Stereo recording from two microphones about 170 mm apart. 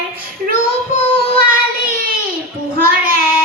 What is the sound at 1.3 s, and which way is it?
Child singing, 60° right (ahead or behind).